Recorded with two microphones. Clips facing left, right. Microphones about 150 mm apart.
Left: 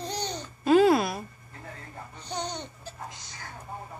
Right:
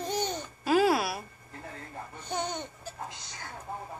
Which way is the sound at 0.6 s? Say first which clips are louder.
Left 5 dB; 5° right (ahead or behind).